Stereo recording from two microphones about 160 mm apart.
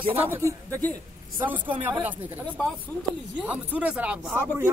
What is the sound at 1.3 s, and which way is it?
Speech, 10° right (ahead or behind).